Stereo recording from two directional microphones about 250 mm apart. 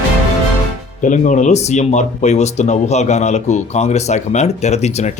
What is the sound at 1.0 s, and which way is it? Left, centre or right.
Speech, left.